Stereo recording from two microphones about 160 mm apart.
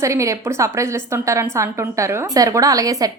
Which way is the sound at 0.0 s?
20° right (ahead or behind).